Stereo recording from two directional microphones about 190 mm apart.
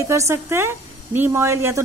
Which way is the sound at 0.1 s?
15° right (ahead or behind).